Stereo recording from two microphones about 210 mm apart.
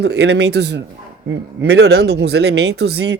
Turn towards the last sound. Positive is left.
turn(degrees=-50)  # may be behind; listen again after turning